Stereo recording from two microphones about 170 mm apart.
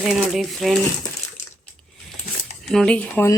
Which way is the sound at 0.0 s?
Centre (ahead or behind).